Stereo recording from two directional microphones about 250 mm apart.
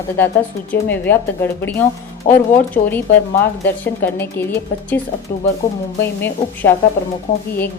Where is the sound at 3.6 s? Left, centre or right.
Centre.